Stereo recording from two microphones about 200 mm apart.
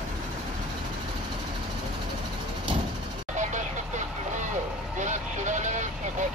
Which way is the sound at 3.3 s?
35° right (ahead or behind).